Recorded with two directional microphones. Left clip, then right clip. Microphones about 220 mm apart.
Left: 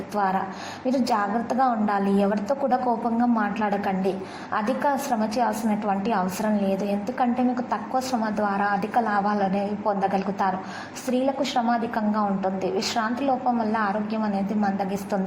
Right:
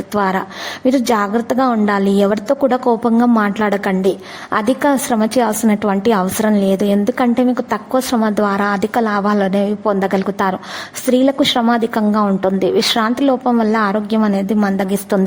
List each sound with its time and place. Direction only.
0.1 s a woman's voice: 40° right (ahead or behind)